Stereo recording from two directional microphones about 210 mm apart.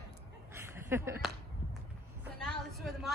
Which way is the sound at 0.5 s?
10° right (ahead or behind).